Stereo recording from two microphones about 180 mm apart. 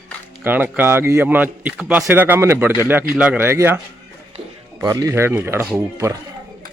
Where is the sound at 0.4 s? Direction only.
10° right (ahead or behind).